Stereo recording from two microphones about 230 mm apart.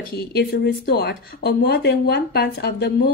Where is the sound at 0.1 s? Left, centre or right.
Left.